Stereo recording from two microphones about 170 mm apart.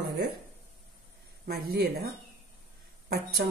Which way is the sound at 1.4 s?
65° right (ahead or behind).